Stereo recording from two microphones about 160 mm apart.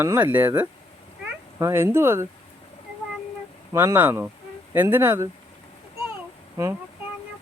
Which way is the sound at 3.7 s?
15° right (ahead or behind).